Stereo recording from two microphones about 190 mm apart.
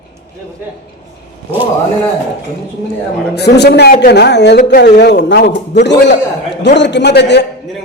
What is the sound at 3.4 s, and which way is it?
A woman's voice, 60° left (ahead or behind).